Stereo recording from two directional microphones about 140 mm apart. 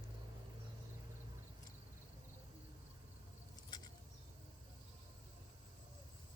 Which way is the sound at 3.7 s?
30° left (ahead or behind).